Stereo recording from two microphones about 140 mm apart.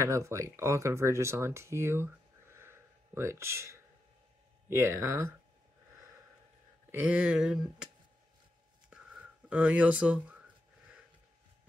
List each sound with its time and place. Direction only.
0.0 s speech: 20° right (ahead or behind)
6.9 s speech: 10° right (ahead or behind)
8.9 s a sound: 5° right (ahead or behind)